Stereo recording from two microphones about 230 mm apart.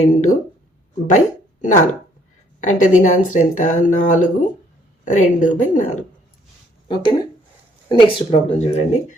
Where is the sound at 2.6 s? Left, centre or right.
Left.